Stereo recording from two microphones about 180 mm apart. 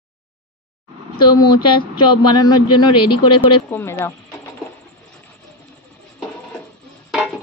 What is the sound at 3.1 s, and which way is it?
Speech, 25° left (ahead or behind).